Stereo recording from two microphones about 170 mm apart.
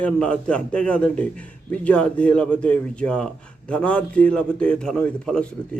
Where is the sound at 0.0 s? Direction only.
5° left (ahead or behind).